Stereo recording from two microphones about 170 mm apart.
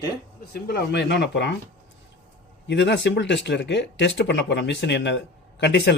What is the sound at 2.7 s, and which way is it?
Speech, 90° left.